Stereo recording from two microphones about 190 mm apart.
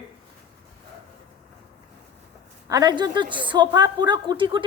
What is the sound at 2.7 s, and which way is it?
A woman's voice, 20° right (ahead or behind).